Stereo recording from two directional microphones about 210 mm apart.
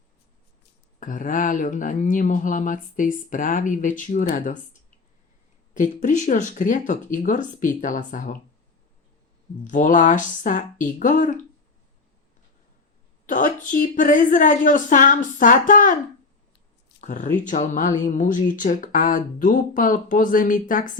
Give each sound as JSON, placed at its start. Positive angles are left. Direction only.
{"t": 0.9, "sound": "speech", "side_deg": 40}
{"t": 9.6, "sound": "speech", "side_deg": 40}
{"t": 13.2, "sound": "speech", "side_deg": 40}
{"t": 17.0, "sound": "speech", "side_deg": 35}